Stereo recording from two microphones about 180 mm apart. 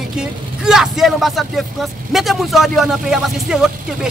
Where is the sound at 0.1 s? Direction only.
5° right (ahead or behind).